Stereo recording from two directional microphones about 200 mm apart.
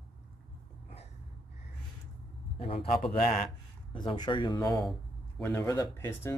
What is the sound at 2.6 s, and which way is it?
Speech, 30° left (ahead or behind).